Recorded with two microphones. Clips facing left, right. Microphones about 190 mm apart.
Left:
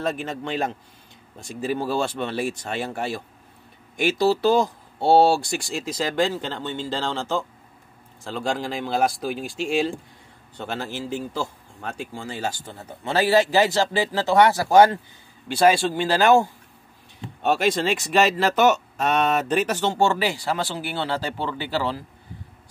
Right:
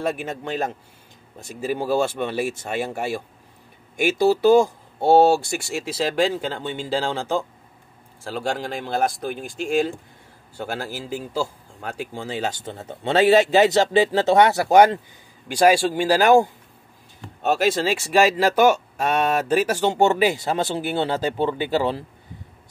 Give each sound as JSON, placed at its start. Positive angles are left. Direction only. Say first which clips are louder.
{"t": 0.0, "sound": "speech", "louder": "right 1 dB", "side_deg": -10}